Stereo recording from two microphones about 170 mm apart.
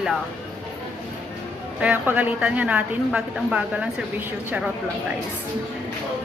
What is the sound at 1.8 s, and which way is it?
A woman's voice, 10° right (ahead or behind).